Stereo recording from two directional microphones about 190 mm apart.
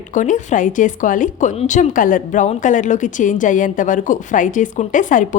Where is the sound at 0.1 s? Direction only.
40° left (ahead or behind).